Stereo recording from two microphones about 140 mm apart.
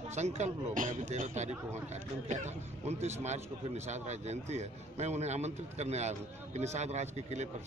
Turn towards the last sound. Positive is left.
turn(degrees=-55)  # may be behind; listen again after turning